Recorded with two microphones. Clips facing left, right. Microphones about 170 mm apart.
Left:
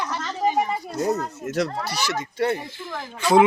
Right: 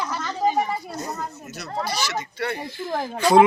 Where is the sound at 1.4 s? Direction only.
90° left.